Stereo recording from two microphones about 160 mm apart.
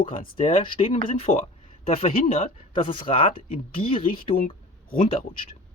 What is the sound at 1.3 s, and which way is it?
Speech, 50° left (ahead or behind).